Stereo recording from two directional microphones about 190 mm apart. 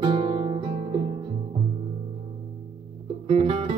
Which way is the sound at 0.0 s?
30° right (ahead or behind).